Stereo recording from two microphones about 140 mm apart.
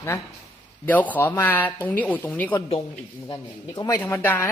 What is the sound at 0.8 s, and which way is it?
Speech, 10° left (ahead or behind).